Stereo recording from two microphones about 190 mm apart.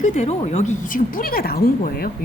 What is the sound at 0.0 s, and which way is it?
A woman's voice, 35° left (ahead or behind).